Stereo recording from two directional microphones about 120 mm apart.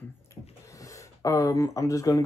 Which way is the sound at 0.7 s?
25° left (ahead or behind).